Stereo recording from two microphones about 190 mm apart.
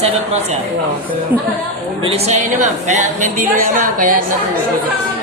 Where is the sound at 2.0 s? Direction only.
35° right (ahead or behind).